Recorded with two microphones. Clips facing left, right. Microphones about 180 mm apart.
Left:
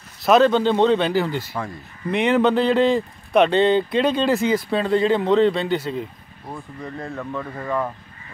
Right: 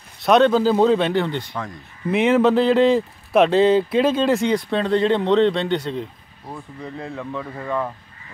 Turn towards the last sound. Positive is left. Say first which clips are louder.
# even
turn(degrees=0)  # may be behind; listen again after turning